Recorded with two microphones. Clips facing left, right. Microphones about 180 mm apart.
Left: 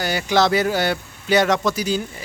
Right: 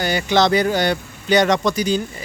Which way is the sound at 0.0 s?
5° left (ahead or behind).